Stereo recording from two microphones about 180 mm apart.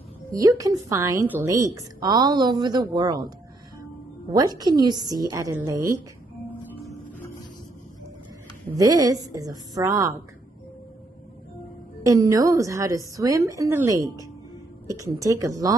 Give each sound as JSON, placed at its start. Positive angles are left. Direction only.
{"t": 0.3, "sound": "a woman's voice", "side_deg": -20}
{"t": 8.7, "sound": "a woman's voice", "side_deg": -20}
{"t": 12.0, "sound": "a woman's voice", "side_deg": -20}